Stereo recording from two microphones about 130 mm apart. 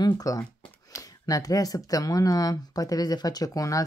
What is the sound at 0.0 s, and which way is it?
Speech, 25° left (ahead or behind).